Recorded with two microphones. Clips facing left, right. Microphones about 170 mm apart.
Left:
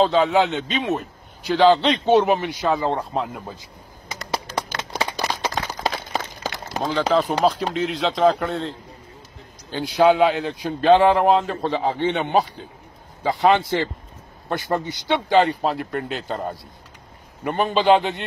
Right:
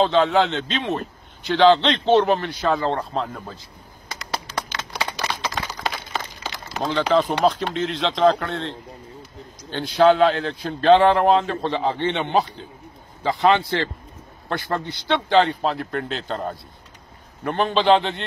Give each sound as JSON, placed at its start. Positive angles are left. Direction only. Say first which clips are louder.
{"t": 0.0, "sound": "a man's voice", "louder": "even", "side_deg": 5}
{"t": 4.9, "sound": "a sound", "louder": "left 2 dB", "side_deg": 40}
{"t": 6.8, "sound": "a man's voice", "louder": "even", "side_deg": 0}
{"t": 15.0, "sound": "speech", "louder": "even", "side_deg": 10}